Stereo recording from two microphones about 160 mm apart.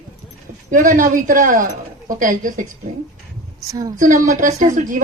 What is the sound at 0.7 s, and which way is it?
Speech, 55° right (ahead or behind).